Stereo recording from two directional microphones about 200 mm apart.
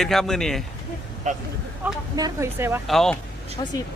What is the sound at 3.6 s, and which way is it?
Speech, 20° left (ahead or behind).